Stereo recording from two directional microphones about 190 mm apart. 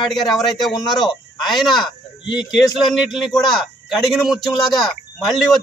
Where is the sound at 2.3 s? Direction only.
Centre (ahead or behind).